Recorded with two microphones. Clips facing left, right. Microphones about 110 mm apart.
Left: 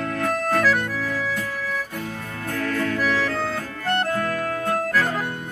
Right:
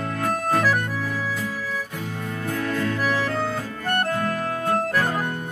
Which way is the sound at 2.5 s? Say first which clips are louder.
Left 1 dB; 20° right (ahead or behind).